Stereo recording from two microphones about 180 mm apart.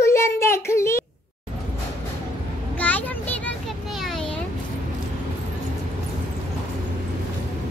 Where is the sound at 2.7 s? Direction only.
10° left (ahead or behind).